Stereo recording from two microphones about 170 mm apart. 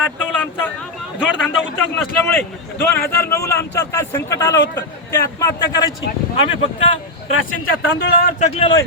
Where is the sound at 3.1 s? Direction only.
15° left (ahead or behind).